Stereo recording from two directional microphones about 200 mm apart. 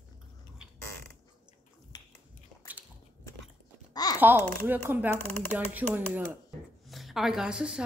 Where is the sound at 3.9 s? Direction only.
20° left (ahead or behind).